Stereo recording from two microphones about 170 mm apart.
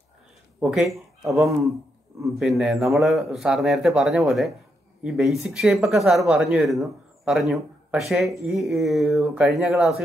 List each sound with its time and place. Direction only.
0.6 s speech: centre (ahead or behind)
2.2 s speech: centre (ahead or behind)